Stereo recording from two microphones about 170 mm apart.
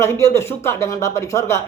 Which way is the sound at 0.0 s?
15° left (ahead or behind).